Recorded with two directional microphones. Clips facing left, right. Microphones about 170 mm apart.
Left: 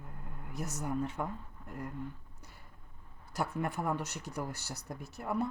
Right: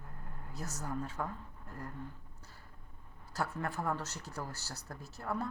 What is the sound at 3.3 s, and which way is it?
A woman's voice, 15° left (ahead or behind).